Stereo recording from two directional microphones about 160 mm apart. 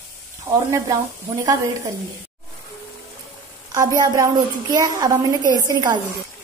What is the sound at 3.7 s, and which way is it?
A woman's voice, 25° right (ahead or behind).